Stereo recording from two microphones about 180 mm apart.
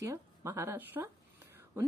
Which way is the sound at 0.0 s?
15° right (ahead or behind).